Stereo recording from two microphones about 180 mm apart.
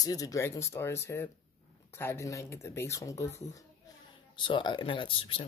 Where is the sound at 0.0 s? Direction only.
20° left (ahead or behind).